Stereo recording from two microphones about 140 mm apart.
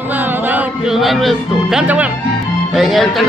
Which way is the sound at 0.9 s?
Centre (ahead or behind).